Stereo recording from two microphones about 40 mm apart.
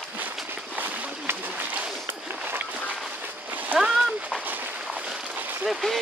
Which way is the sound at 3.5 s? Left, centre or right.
Right.